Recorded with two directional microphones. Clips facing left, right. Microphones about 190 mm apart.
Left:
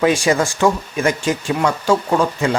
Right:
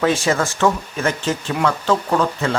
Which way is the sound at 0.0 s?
15° left (ahead or behind).